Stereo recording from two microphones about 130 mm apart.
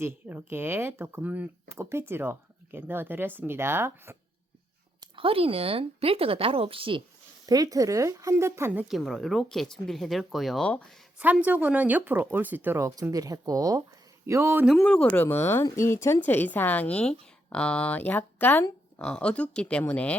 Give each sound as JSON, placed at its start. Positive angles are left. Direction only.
{"t": 0.0, "sound": "speech", "side_deg": -15}
{"t": 5.1, "sound": "speech", "side_deg": -45}
{"t": 7.4, "sound": "speech", "side_deg": -30}
{"t": 8.9, "sound": "speech", "side_deg": 0}
{"t": 11.2, "sound": "speech", "side_deg": -10}
{"t": 14.8, "sound": "speech", "side_deg": 10}